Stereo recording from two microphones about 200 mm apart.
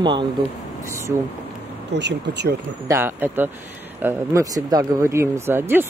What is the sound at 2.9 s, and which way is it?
Speech, 10° right (ahead or behind).